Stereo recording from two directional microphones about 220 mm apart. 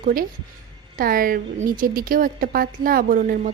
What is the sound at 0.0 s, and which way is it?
A woman's voice, 40° right (ahead or behind).